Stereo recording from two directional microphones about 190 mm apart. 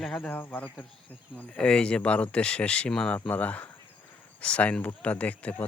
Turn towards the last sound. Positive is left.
turn(degrees=10)  # may be behind; listen again after turning